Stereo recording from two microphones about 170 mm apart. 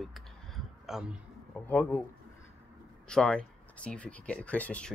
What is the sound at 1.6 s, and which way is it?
Speech, 10° left (ahead or behind).